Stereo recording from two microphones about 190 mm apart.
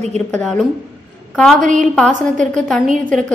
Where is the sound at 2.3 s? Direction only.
5° left (ahead or behind).